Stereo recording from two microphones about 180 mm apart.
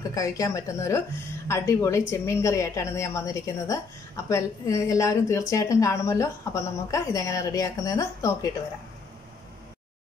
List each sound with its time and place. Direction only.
0.1 s a woman's voice: 20° left (ahead or behind)